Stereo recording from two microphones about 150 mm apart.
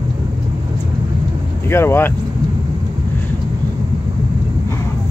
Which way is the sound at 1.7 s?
15° left (ahead or behind).